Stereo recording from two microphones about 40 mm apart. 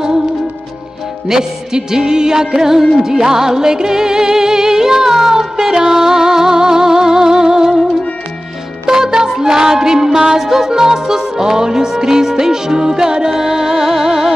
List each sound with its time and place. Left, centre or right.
1.2 s music: centre
8.8 s music: centre